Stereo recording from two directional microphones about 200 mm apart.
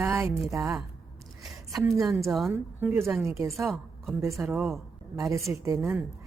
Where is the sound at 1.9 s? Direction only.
Centre (ahead or behind).